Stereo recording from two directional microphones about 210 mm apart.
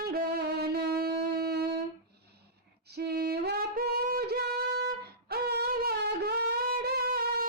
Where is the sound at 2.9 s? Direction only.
50° right (ahead or behind).